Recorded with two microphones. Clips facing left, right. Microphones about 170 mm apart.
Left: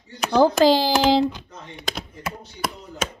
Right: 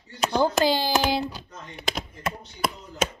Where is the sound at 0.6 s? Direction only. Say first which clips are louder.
Left 6 dB; 90° left.